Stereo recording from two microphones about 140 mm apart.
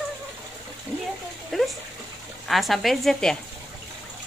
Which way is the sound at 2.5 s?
Centre (ahead or behind).